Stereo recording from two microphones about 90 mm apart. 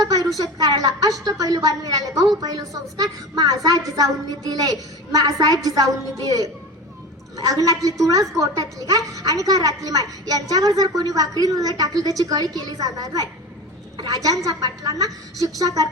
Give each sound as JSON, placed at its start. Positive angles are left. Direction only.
{"t": 0.0, "sound": "a sound", "side_deg": -45}
{"t": 0.3, "sound": "a woman's voice", "side_deg": -45}
{"t": 13.9, "sound": "a woman's voice", "side_deg": -55}
{"t": 14.2, "sound": "a woman's voice", "side_deg": -40}